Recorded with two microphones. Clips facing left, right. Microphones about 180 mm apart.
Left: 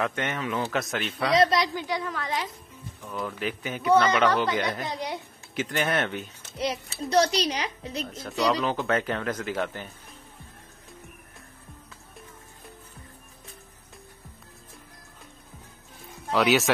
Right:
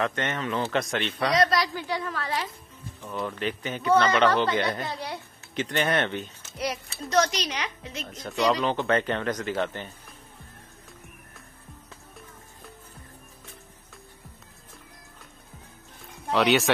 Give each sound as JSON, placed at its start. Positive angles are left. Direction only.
{"t": 0.0, "sound": "speech", "side_deg": 10}
{"t": 1.3, "sound": "a woman's voice", "side_deg": 25}
{"t": 5.6, "sound": "speech", "side_deg": 5}
{"t": 6.9, "sound": "a woman's voice", "side_deg": 35}
{"t": 8.1, "sound": "a woman's voice", "side_deg": 5}
{"t": 8.4, "sound": "speech", "side_deg": -10}
{"t": 8.6, "sound": "speech", "side_deg": 5}
{"t": 16.3, "sound": "speech", "side_deg": 0}